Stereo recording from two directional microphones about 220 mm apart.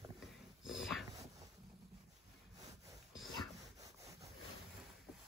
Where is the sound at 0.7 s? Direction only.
Centre (ahead or behind).